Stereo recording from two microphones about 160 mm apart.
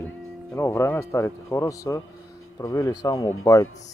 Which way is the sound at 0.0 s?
15° left (ahead or behind).